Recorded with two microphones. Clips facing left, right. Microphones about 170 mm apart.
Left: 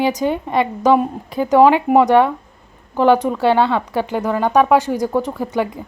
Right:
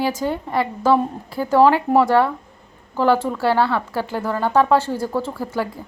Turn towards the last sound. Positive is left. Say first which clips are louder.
# left 4 dB
turn(degrees=20)  # may be behind; listen again after turning